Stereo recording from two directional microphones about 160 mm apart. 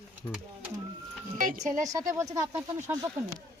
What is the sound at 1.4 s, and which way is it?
Speech, 50° right (ahead or behind).